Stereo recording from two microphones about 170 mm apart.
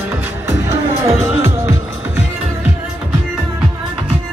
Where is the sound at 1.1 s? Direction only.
15° right (ahead or behind).